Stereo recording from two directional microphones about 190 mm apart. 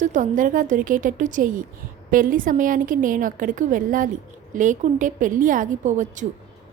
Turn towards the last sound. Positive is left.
turn(degrees=-40)  # may be behind; listen again after turning